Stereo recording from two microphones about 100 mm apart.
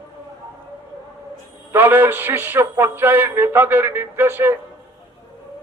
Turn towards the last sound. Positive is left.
turn(degrees=-20)  # may be behind; listen again after turning